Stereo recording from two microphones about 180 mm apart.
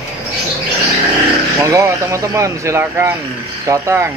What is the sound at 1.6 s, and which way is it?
Speech, 15° right (ahead or behind).